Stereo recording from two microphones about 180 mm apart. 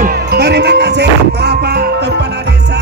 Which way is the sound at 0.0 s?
60° right (ahead or behind).